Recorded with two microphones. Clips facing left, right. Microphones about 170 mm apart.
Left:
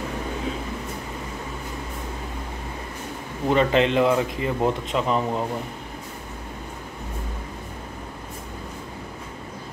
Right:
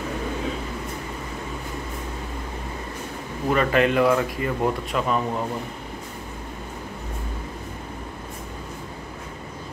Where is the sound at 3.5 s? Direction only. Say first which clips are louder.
Left 1 dB; 25° left (ahead or behind).